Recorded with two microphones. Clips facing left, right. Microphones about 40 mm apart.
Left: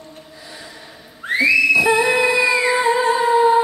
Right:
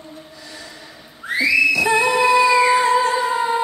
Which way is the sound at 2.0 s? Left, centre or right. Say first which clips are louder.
Right 1 dB; left.